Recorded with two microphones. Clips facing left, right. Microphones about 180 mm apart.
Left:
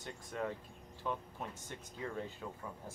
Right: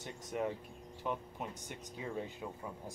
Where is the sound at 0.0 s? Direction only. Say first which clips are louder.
Right 3 dB; 15° right (ahead or behind).